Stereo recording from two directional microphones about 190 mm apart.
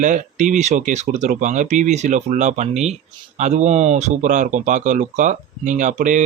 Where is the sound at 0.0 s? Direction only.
40° right (ahead or behind).